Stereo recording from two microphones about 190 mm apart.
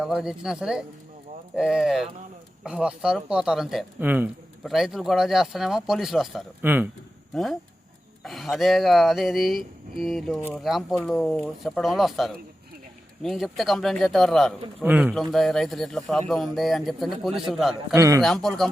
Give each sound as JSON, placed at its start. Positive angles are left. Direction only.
{"t": 0.0, "sound": "speech", "side_deg": -5}
{"t": 17.9, "sound": "speech", "side_deg": -15}
{"t": 18.2, "sound": "speech", "side_deg": 0}